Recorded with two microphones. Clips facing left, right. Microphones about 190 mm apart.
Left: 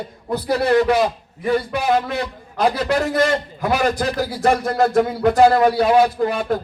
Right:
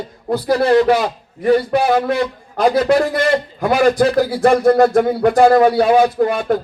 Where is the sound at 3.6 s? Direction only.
60° right (ahead or behind).